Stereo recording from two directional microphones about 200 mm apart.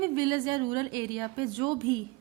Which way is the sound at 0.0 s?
20° right (ahead or behind).